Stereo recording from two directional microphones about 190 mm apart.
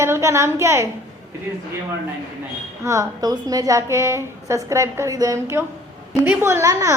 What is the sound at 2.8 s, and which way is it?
A woman's voice, 15° right (ahead or behind).